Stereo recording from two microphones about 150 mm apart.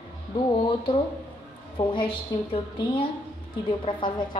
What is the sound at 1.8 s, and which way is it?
A woman's voice, 30° left (ahead or behind).